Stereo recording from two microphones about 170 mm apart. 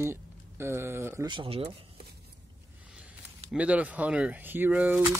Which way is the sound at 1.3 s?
30° right (ahead or behind).